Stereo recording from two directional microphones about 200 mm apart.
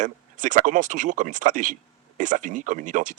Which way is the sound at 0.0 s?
40° right (ahead or behind).